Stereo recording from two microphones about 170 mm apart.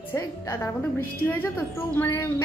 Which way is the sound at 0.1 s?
15° left (ahead or behind).